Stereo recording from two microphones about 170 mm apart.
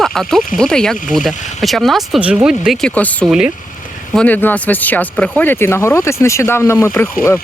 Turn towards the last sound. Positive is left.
turn(degrees=10)  # may be behind; listen again after turning